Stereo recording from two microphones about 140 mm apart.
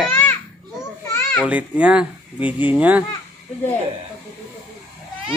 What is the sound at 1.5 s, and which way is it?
Speech, 10° right (ahead or behind).